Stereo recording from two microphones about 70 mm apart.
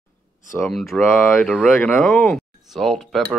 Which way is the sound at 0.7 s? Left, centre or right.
Centre.